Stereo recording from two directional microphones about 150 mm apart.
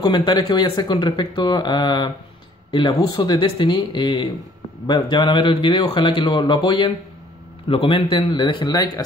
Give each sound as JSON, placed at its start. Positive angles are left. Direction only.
{"t": 0.0, "sound": "speech", "side_deg": 30}